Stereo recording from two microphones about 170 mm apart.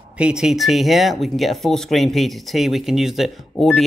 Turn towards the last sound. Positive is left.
turn(degrees=0)  # may be behind; listen again after turning